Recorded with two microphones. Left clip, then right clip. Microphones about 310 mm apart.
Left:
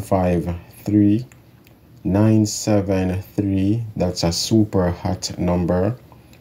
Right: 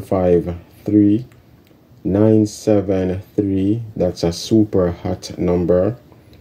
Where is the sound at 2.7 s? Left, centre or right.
Centre.